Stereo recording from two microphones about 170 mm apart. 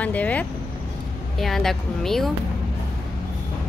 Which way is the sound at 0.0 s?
10° left (ahead or behind).